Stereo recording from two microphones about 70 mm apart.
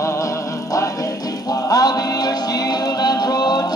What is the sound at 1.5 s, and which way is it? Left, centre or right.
Music, left.